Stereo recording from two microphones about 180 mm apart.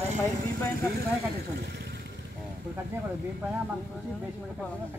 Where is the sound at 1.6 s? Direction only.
70° right (ahead or behind).